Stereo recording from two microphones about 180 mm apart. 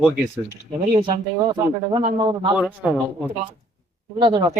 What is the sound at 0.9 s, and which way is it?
Speech, 25° right (ahead or behind).